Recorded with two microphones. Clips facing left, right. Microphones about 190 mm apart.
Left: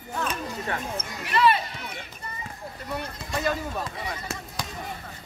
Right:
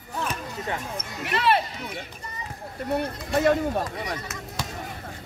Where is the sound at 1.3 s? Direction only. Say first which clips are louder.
Left 1 dB; 65° right (ahead or behind).